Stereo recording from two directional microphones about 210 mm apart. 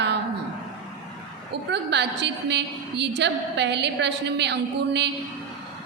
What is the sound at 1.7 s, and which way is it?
A woman's voice, 55° right (ahead or behind).